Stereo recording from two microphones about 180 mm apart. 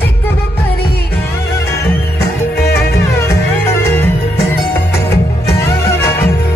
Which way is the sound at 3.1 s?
15° left (ahead or behind).